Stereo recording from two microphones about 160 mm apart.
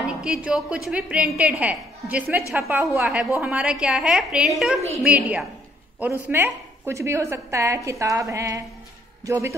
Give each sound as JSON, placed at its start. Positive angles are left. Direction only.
{"t": 0.2, "sound": "a woman's voice", "side_deg": -5}